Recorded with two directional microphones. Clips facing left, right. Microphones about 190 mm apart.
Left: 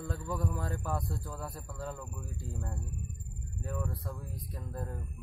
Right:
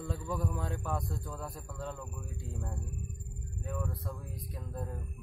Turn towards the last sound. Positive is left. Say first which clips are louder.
# even
turn(degrees=0)  # may be behind; listen again after turning